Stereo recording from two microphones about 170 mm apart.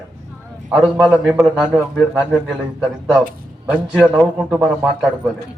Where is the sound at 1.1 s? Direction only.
10° right (ahead or behind).